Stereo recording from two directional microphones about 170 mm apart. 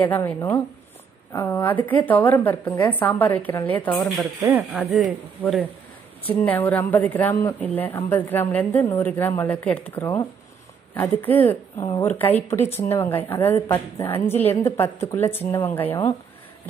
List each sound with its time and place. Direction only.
0.0 s a woman's voice: 10° left (ahead or behind)
1.3 s a woman's voice: 15° left (ahead or behind)
4.2 s speech: 10° right (ahead or behind)
4.7 s speech: centre (ahead or behind)
6.2 s a woman's voice: 10° left (ahead or behind)